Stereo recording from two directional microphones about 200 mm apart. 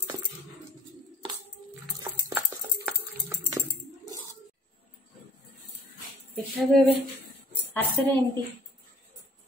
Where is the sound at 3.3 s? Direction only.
15° right (ahead or behind).